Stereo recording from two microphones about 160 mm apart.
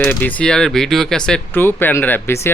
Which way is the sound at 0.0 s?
10° left (ahead or behind).